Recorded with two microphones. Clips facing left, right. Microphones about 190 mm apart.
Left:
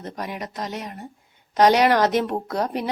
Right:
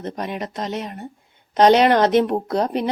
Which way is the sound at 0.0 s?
20° right (ahead or behind).